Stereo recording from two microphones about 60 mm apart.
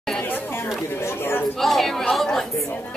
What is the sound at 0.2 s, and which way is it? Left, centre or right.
Chatter, left.